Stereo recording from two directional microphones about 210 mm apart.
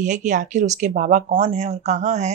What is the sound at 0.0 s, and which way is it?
Speech, 35° right (ahead or behind).